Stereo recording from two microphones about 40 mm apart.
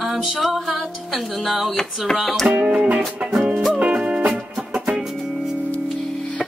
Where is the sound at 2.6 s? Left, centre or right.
Right.